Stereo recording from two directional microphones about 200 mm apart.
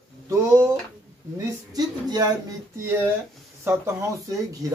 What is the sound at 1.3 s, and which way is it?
Speech, 20° right (ahead or behind).